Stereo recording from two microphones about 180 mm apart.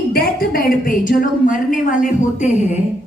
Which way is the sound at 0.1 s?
55° left (ahead or behind).